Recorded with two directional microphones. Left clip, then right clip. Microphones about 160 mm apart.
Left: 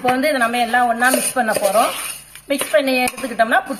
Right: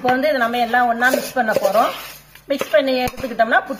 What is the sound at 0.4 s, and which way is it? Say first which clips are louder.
Speech: left 1 dB; 15° right (ahead or behind).